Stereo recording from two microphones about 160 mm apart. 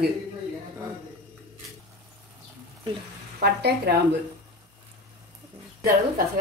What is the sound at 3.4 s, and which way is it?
Speech, 85° right.